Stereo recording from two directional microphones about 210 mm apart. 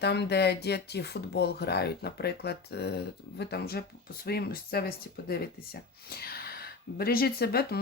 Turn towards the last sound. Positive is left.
turn(degrees=45)  # may be behind; listen again after turning